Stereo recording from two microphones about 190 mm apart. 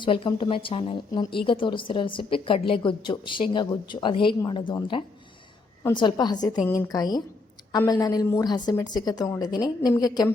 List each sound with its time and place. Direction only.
0.0 s a woman's voice: 25° left (ahead or behind)